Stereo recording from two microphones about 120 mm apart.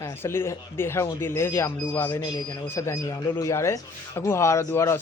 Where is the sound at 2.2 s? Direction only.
30° left (ahead or behind).